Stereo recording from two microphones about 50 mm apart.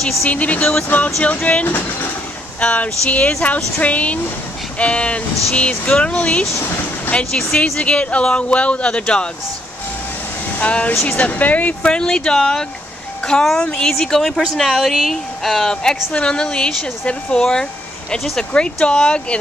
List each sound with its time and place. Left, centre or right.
0.3 s speech: left
0.8 s speech: left
6.5 s speech: left
7.1 s speech: left
10.6 s speech: left
11.8 s a woman's voice: centre